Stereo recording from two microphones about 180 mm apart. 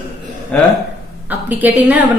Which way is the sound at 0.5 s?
5° left (ahead or behind).